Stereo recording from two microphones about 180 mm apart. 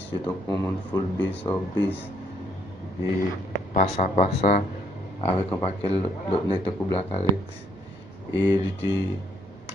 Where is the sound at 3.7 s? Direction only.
40° left (ahead or behind).